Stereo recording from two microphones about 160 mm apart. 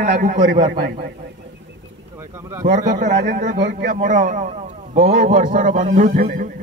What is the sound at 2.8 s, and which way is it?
A man's voice, 50° right (ahead or behind).